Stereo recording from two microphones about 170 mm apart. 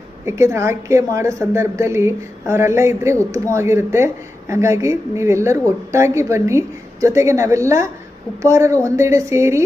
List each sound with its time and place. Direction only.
0.3 s a woman's voice: 15° right (ahead or behind)